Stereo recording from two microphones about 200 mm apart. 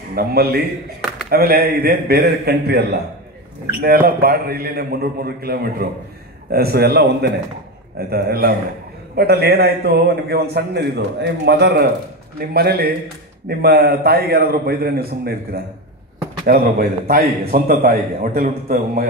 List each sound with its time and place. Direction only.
0.1 s a man's voice: 50° right (ahead or behind)